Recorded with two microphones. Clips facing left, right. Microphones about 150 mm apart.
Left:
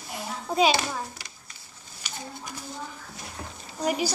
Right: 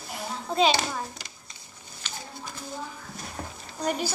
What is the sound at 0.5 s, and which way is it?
Speech, 10° left (ahead or behind).